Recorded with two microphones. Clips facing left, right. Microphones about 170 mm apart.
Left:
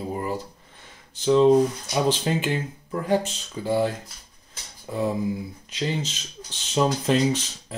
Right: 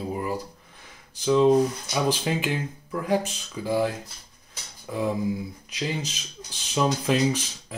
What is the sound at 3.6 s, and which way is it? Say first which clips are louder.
Speech: left 1 dB; 20° left (ahead or behind).